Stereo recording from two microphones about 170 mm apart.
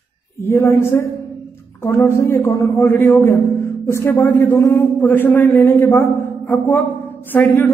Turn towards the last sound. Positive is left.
turn(degrees=10)  # may be behind; listen again after turning